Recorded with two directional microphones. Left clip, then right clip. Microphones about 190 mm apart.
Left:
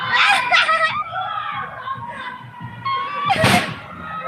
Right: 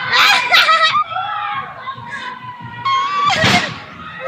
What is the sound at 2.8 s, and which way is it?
Music, 15° right (ahead or behind).